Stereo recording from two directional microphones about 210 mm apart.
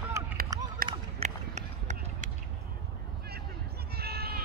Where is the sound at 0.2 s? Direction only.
15° right (ahead or behind).